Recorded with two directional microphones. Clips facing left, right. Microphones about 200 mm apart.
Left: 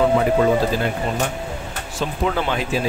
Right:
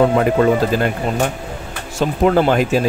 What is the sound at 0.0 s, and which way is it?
Speech, 55° right (ahead or behind).